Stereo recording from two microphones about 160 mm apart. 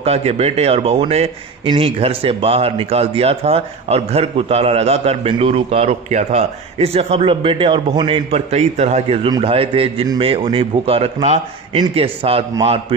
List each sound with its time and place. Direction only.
0.0 s speech: 40° right (ahead or behind)